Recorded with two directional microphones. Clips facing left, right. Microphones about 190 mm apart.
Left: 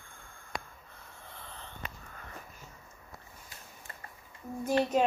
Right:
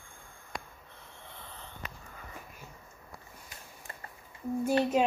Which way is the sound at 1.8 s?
30° left (ahead or behind).